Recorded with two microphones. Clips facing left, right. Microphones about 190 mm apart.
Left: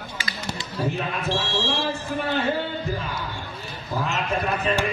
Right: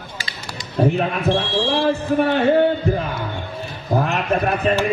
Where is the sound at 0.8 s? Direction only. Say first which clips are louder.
Right 9 dB; 60° right (ahead or behind).